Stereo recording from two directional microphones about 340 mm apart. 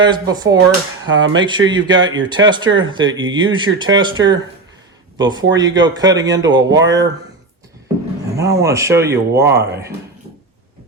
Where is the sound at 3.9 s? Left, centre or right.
Centre.